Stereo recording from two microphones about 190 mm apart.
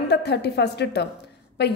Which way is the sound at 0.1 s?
60° left (ahead or behind).